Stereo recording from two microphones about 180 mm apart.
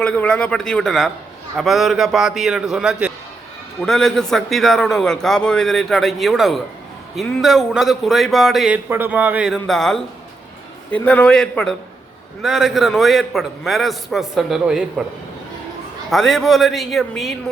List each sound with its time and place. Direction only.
0.0 s a man's voice: 5° left (ahead or behind)
16.0 s a man's voice: centre (ahead or behind)